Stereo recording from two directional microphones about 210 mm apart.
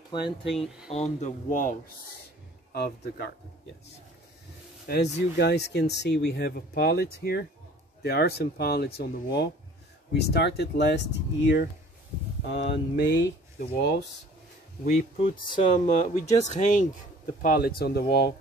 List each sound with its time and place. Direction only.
0.1 s speech: 25° left (ahead or behind)
0.5 s speech: centre (ahead or behind)
1.2 s speech: 40° left (ahead or behind)
4.8 s speech: 50° left (ahead or behind)
12.4 s speech: 55° left (ahead or behind)
14.9 s speech: 25° left (ahead or behind); by 18.3 s 45° left (ahead or behind)